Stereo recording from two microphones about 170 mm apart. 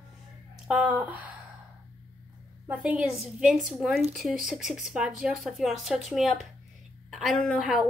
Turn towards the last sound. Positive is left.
turn(degrees=0)  # may be behind; listen again after turning